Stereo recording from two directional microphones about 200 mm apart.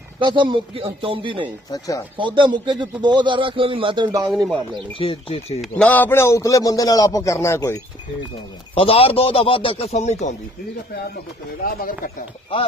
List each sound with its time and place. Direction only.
0.2 s a man's voice: 25° right (ahead or behind)
1.7 s a man's voice: 15° left (ahead or behind)
2.1 s a man's voice: 25° right (ahead or behind)
4.3 s speech: centre (ahead or behind)
4.9 s a man's voice: 25° left (ahead or behind)
5.8 s a man's voice: 10° left (ahead or behind)
8.7 s a man's voice: 30° left (ahead or behind)
11.6 s speech: 45° left (ahead or behind)